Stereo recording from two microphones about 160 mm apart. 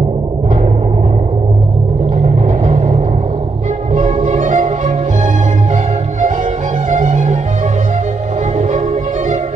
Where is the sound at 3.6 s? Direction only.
50° right (ahead or behind).